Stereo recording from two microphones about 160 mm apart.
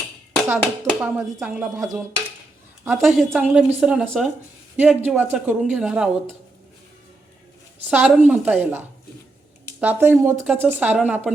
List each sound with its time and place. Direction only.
0.4 s speech: 15° right (ahead or behind)
1.8 s speech: 20° right (ahead or behind)
2.8 s a woman's voice: 5° right (ahead or behind)
4.8 s speech: 10° right (ahead or behind)
7.9 s speech: 10° right (ahead or behind)
9.8 s speech: 10° right (ahead or behind)